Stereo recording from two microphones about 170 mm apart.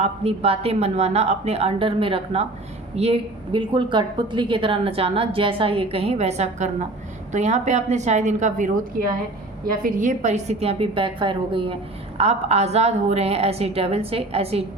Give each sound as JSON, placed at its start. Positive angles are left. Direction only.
{"t": 0.0, "sound": "a woman's voice", "side_deg": -35}
{"t": 9.0, "sound": "a woman's voice", "side_deg": -60}